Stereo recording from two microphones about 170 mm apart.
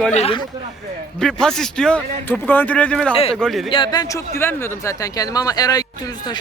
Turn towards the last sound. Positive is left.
turn(degrees=20)  # may be behind; listen again after turning